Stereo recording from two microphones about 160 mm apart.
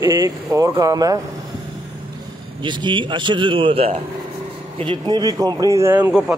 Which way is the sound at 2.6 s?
30° right (ahead or behind).